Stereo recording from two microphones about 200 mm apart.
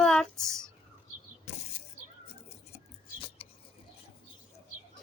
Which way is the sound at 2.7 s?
30° left (ahead or behind).